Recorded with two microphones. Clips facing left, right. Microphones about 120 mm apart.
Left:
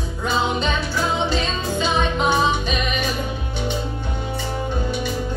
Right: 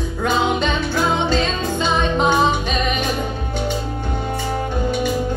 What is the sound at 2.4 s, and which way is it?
Music, 45° right (ahead or behind).